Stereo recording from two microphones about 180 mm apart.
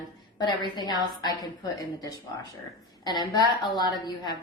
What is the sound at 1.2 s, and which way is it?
A woman's voice, 20° left (ahead or behind).